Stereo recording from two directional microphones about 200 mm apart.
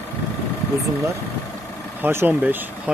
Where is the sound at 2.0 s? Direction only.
10° right (ahead or behind).